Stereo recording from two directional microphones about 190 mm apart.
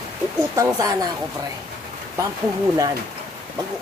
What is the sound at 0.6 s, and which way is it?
Speech, 20° right (ahead or behind).